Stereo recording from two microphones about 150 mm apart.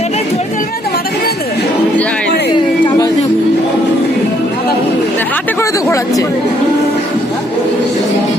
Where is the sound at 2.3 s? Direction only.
90° left.